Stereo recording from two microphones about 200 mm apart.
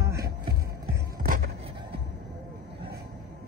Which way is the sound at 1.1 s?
45° right (ahead or behind).